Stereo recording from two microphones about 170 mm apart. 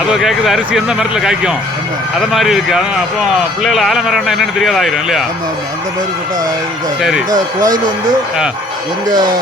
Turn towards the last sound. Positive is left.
turn(degrees=-25)  # may be behind; listen again after turning